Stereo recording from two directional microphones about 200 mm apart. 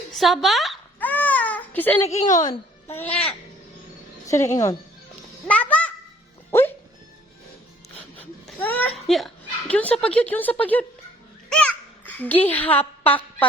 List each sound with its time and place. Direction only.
0.1 s babbling: centre (ahead or behind)
2.0 s a woman's voice: 35° left (ahead or behind)
2.5 s a child's voice: 10° left (ahead or behind)
5.5 s a sound: 5° left (ahead or behind)
6.5 s music: 10° left (ahead or behind)
8.1 s a sound: 10° left (ahead or behind)
10.0 s speech: 5° left (ahead or behind)
11.4 s babbling: 5° left (ahead or behind)
12.7 s speech: 10° left (ahead or behind)